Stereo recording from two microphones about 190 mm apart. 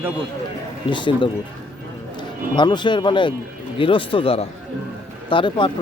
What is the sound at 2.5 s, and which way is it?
Speech, 25° left (ahead or behind).